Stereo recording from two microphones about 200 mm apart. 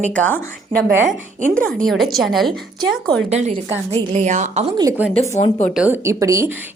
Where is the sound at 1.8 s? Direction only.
Centre (ahead or behind).